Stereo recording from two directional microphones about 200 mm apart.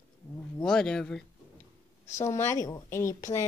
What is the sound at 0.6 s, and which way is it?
Speech, 5° left (ahead or behind).